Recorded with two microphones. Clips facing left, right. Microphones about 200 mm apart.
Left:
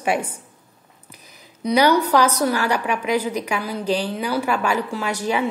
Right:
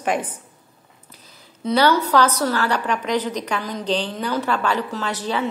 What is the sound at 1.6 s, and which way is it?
A woman's voice, 15° left (ahead or behind).